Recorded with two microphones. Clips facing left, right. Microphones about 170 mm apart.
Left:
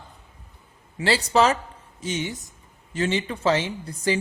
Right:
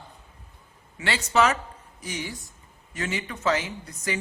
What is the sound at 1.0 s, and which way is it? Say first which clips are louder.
Speech: left 3 dB; 35° left (ahead or behind).